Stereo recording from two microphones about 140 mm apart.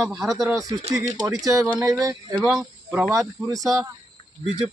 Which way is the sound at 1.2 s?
25° right (ahead or behind).